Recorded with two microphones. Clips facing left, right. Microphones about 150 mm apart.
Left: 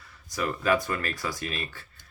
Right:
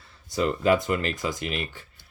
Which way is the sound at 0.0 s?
25° right (ahead or behind).